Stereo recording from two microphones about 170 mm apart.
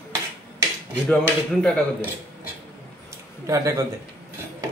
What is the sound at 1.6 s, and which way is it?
Speech, 5° left (ahead or behind).